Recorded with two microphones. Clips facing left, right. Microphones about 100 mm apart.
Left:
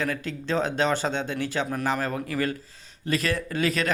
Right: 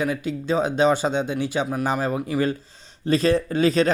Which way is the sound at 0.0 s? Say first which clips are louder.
Right 4 dB; 15° right (ahead or behind).